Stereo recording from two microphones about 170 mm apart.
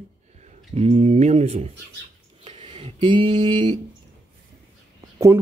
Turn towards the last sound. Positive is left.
turn(degrees=-20)  # may be behind; listen again after turning